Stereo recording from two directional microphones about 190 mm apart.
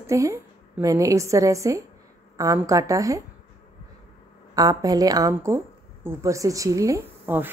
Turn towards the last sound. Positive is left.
turn(degrees=-10)  # may be behind; listen again after turning